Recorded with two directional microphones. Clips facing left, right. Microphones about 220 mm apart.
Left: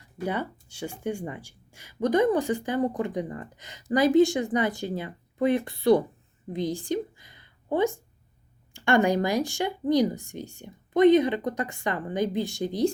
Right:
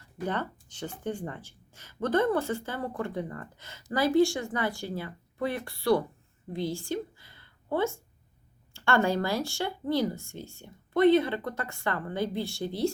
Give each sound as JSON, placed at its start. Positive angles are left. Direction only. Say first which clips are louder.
{"t": 0.3, "sound": "a woman's voice", "louder": "left 3 dB", "side_deg": 10}